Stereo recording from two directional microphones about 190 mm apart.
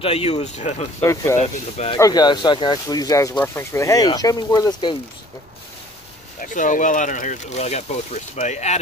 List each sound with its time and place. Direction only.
0.0 s speech: 30° left (ahead or behind)
1.0 s speech: 15° left (ahead or behind)
1.4 s speech: 35° left (ahead or behind)
2.0 s speech: 20° left (ahead or behind)
6.4 s speech: 40° left (ahead or behind)